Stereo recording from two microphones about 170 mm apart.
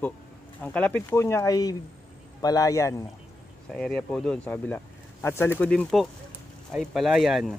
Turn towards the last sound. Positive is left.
turn(degrees=0)  # may be behind; listen again after turning